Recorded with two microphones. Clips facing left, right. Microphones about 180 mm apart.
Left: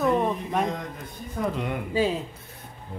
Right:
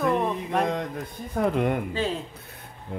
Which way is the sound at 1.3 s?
50° right (ahead or behind).